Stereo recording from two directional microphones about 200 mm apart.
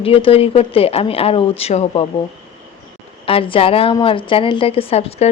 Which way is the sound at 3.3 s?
25° left (ahead or behind).